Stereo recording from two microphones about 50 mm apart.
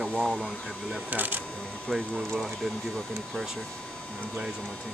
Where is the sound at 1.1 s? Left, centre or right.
Right.